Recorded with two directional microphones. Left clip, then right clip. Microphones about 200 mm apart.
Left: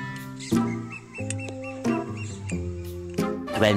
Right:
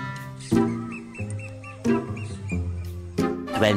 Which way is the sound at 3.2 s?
Centre (ahead or behind).